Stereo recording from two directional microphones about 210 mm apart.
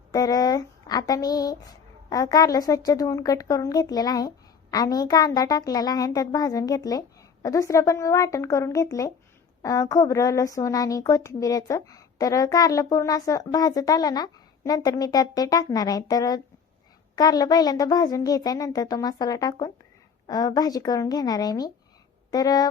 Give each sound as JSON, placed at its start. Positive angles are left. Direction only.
{"t": 0.1, "sound": "a woman's voice", "side_deg": 15}